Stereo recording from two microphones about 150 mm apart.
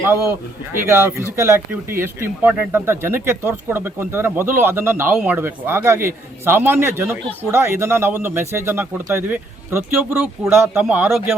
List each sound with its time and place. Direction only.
0.0 s speech: 15° right (ahead or behind)